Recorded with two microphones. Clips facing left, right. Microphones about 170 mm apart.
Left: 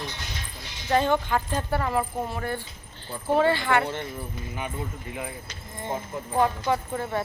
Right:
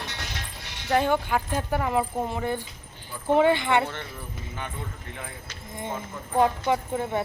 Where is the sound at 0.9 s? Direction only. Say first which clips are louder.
Even; 10° right (ahead or behind).